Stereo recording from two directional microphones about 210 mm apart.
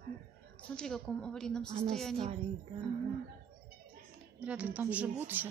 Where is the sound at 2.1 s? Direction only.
30° right (ahead or behind).